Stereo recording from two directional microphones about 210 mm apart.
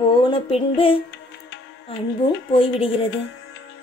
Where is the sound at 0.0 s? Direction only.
25° left (ahead or behind).